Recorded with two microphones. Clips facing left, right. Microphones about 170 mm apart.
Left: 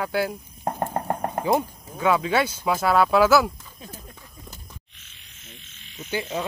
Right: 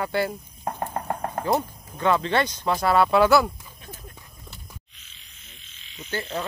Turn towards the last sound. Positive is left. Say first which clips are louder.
# left 2 dB
turn(degrees=15)  # may be behind; listen again after turning